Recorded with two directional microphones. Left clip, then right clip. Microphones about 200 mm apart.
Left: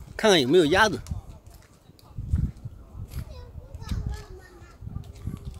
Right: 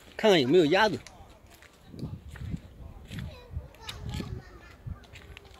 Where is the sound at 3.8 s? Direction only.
45° left (ahead or behind).